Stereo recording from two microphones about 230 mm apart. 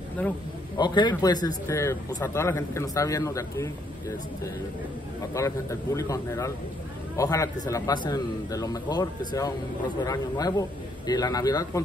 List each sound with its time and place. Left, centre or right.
0.7 s speech: centre
5.3 s speech: centre